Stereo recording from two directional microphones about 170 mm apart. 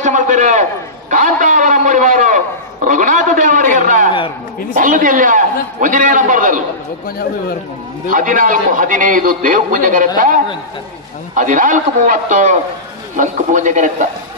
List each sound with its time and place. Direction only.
0.0 s a sound: 45° right (ahead or behind)
1.1 s a man's voice: 50° right (ahead or behind)
8.1 s a man's voice: 50° right (ahead or behind)